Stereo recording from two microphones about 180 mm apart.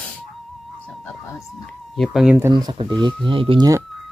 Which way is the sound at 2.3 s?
20° right (ahead or behind).